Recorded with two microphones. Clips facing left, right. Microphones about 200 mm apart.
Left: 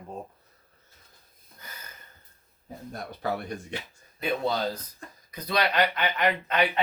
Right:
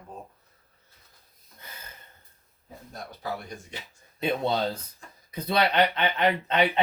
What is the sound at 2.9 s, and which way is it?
Speech, 60° left (ahead or behind).